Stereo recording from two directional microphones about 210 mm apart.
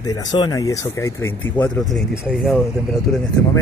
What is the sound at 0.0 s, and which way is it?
Speech, 20° left (ahead or behind).